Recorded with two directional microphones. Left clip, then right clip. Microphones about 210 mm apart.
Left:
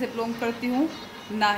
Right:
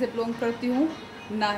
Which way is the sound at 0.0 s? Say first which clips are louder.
Right 1 dB; 10° left (ahead or behind).